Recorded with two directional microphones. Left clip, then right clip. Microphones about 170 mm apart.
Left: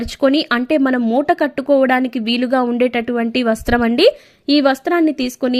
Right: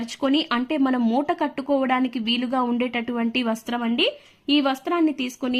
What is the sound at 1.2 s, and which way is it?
A woman's voice, 30° left (ahead or behind).